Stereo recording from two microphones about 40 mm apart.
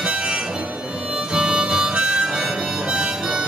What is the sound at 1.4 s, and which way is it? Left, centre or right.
Harmonica, centre.